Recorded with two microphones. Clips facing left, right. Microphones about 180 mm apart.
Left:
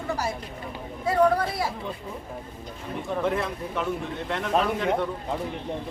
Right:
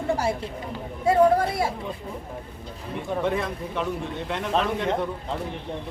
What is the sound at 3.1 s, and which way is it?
Speech, centre (ahead or behind).